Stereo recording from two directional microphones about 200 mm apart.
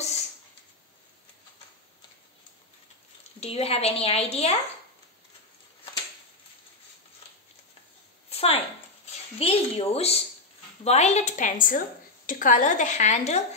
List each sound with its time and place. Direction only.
3.3 s a woman's voice: 30° left (ahead or behind)
8.3 s a sound: 30° left (ahead or behind)
10.8 s a woman's voice: 35° left (ahead or behind)